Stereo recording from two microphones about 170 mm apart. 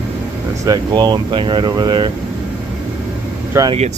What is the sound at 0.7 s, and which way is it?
Speech, 25° right (ahead or behind).